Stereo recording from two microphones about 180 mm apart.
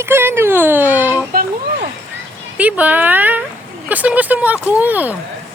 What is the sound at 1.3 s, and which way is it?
Speech, 55° right (ahead or behind).